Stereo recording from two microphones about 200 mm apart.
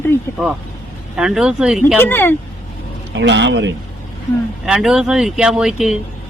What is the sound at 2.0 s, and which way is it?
Speech, 10° left (ahead or behind).